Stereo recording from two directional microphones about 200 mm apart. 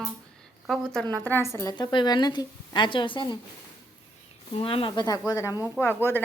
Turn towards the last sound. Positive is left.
turn(degrees=10)  # may be behind; listen again after turning